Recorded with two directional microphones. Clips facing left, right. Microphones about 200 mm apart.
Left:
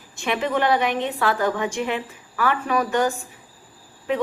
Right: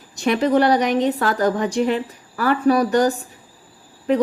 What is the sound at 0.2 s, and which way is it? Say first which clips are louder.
A woman's voice: right 6 dB; 40° right (ahead or behind).